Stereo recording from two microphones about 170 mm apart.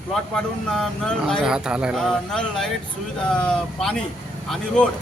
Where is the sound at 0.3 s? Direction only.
5° left (ahead or behind).